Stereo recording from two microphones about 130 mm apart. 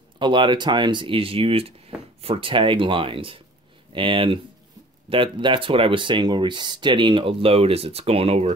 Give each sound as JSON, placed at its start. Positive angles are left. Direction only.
{"t": 0.2, "sound": "speech", "side_deg": -40}